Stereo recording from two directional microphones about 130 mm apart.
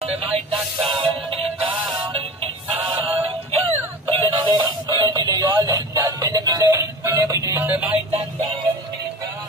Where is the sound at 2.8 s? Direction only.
45° right (ahead or behind); by 7.8 s 15° right (ahead or behind).